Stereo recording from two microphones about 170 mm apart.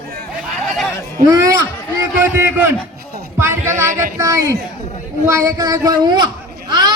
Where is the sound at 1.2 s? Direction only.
20° right (ahead or behind).